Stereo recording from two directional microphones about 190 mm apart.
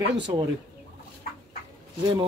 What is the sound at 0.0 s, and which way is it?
Speech, 70° right (ahead or behind).